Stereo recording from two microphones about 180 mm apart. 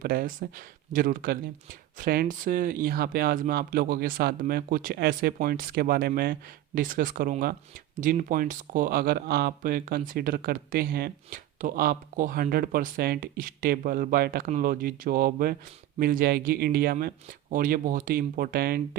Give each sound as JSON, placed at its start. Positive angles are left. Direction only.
{"t": 0.0, "sound": "speech", "side_deg": -55}